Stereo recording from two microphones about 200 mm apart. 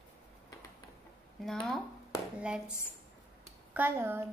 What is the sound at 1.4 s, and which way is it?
Speech, centre (ahead or behind).